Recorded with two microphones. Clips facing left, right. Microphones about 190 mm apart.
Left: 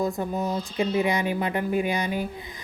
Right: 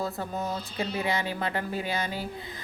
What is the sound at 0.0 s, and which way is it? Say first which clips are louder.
Speech: left 5 dB; 15° left (ahead or behind).